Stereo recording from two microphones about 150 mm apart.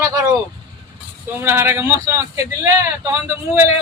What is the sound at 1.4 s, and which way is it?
Speech, 15° right (ahead or behind).